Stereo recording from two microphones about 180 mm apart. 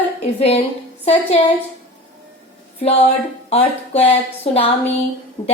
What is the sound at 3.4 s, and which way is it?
Speech, 35° left (ahead or behind).